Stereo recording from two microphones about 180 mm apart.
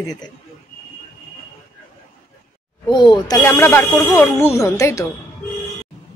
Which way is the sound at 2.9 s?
25° left (ahead or behind).